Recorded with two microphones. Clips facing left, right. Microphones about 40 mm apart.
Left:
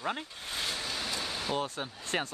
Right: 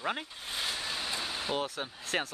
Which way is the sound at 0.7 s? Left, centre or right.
Centre.